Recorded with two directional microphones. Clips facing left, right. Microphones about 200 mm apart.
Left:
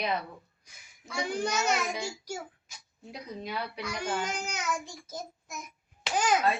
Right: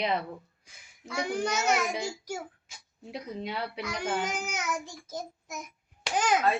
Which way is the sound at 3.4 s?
25° right (ahead or behind).